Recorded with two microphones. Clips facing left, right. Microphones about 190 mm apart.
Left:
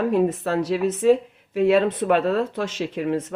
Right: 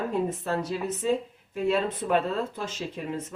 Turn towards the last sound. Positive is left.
turn(degrees=75)  # may be behind; listen again after turning